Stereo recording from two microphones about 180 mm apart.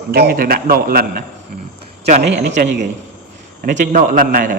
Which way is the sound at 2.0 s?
40° right (ahead or behind).